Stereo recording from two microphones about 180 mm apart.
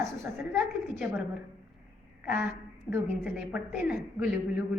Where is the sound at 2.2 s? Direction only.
10° right (ahead or behind).